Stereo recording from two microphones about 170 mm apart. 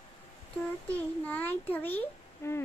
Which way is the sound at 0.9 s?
10° left (ahead or behind).